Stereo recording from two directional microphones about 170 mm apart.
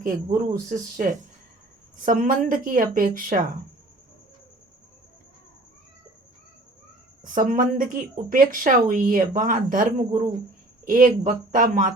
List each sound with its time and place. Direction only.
0.0 s speech: 50° right (ahead or behind)
7.3 s speech: 50° right (ahead or behind)